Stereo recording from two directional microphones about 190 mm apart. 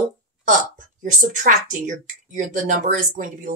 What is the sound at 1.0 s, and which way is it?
A woman's voice, 40° right (ahead or behind).